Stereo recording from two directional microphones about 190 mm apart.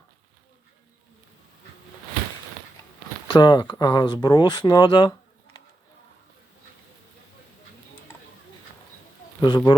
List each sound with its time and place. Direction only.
3.2 s speech: 25° left (ahead or behind)
9.4 s speech: 20° left (ahead or behind)